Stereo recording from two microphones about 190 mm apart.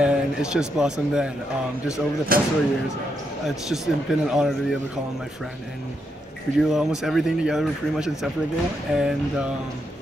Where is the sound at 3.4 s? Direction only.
Centre (ahead or behind).